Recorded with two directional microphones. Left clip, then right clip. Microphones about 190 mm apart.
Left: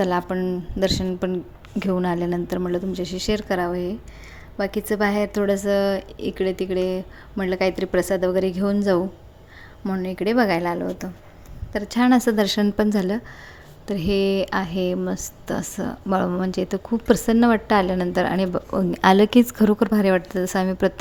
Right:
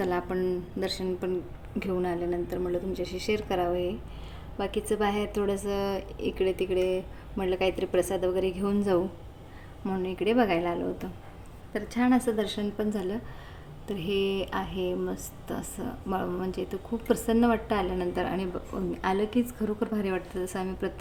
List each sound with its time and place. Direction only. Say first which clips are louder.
0.0 s a woman's voice: left 6 dB; 35° left (ahead or behind)